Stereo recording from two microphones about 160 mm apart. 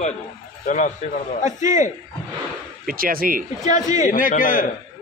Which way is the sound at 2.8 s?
65° right (ahead or behind).